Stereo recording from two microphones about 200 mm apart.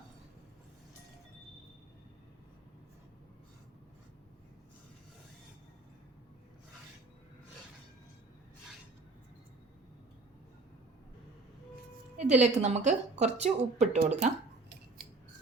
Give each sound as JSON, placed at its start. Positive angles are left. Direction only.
{"t": 12.1, "sound": "music", "side_deg": -35}
{"t": 12.6, "sound": "speech", "side_deg": -35}